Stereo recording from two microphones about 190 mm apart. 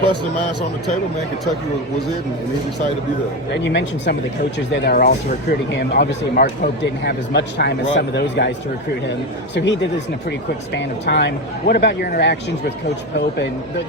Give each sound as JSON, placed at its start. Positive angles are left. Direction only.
{"t": 3.5, "sound": "speech", "side_deg": 70}
{"t": 4.7, "sound": "speech", "side_deg": 55}
{"t": 9.6, "sound": "speech", "side_deg": 65}
{"t": 10.8, "sound": "speech", "side_deg": 65}